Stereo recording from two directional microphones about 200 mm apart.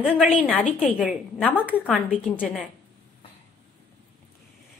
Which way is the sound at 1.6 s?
5° right (ahead or behind).